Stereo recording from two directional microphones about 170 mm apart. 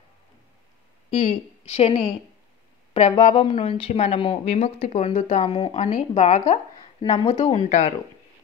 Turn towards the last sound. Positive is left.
turn(degrees=40)  # may be behind; listen again after turning